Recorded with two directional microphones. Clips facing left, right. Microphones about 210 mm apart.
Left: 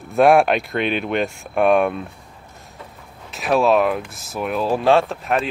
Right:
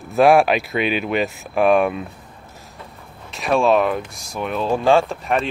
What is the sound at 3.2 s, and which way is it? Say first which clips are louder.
Speech: even; centre (ahead or behind).